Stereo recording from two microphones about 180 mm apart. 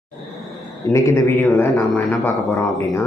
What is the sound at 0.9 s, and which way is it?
Speech, 15° left (ahead or behind).